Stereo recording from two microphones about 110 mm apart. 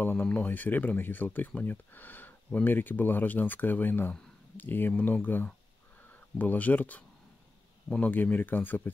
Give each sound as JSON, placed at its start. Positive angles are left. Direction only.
{"t": 0.0, "sound": "speech", "side_deg": 15}